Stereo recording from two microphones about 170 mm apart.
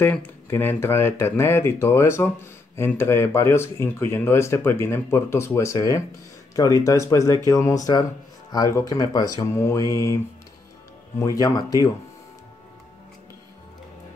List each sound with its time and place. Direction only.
0.0 s speech: 10° left (ahead or behind)